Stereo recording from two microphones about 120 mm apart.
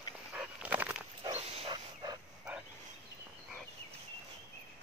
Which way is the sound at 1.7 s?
35° right (ahead or behind).